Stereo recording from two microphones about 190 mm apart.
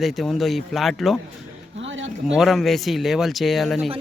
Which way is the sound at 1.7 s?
80° right.